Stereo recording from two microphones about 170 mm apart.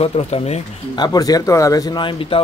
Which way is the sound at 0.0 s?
35° left (ahead or behind).